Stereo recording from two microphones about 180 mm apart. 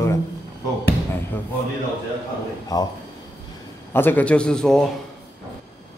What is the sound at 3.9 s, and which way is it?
Speech, 10° left (ahead or behind).